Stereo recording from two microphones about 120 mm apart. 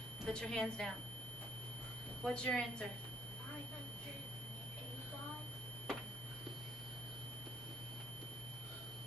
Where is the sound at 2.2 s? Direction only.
10° left (ahead or behind).